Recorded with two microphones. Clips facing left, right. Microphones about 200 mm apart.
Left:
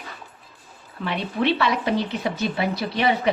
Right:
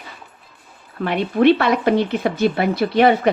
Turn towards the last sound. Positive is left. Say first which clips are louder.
# right 7 dB
turn(degrees=-55)  # may be behind; listen again after turning